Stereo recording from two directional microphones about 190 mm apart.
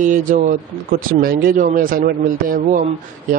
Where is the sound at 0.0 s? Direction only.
40° right (ahead or behind).